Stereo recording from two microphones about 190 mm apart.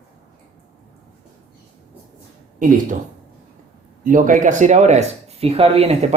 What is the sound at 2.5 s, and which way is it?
Speech, 45° right (ahead or behind).